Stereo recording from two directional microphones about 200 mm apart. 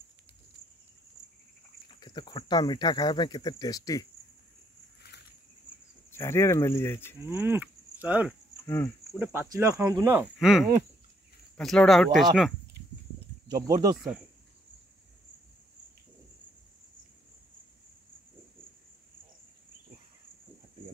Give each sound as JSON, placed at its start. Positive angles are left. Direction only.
{"t": 1.9, "sound": "speech", "side_deg": 20}
{"t": 6.1, "sound": "speech", "side_deg": 10}
{"t": 7.2, "sound": "cattle", "side_deg": -10}
{"t": 8.6, "sound": "speech", "side_deg": 10}
{"t": 9.2, "sound": "speech", "side_deg": -10}
{"t": 13.6, "sound": "speech", "side_deg": -20}